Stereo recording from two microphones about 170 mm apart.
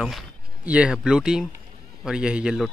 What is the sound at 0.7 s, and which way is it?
Speech, 5° right (ahead or behind).